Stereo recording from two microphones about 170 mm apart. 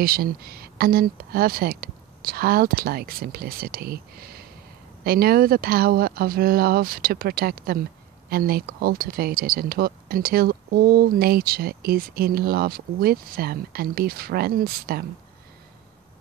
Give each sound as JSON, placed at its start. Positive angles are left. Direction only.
{"t": 0.0, "sound": "speech", "side_deg": -60}